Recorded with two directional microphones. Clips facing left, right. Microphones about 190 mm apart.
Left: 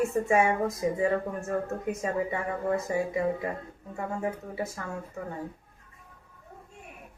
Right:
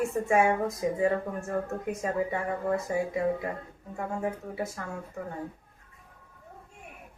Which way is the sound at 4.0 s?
Centre (ahead or behind).